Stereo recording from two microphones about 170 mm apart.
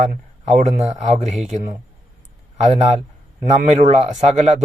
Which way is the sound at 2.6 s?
40° right (ahead or behind).